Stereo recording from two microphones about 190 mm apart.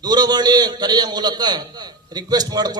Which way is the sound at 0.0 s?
20° right (ahead or behind).